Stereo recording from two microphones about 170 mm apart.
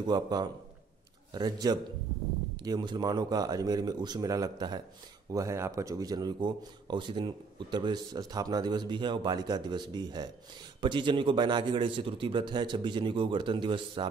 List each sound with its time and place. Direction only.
0.0 s a man's voice: 25° right (ahead or behind)